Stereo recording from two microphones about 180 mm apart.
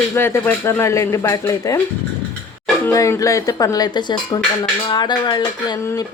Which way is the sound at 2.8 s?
15° left (ahead or behind).